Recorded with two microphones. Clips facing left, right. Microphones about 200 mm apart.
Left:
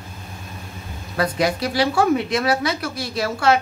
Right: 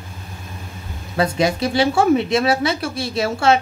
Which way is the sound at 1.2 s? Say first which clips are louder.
Right 2 dB; 25° right (ahead or behind).